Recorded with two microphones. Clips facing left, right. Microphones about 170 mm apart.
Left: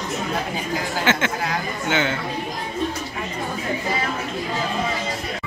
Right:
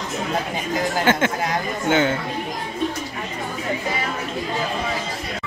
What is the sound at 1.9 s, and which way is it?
Speech, 45° right (ahead or behind).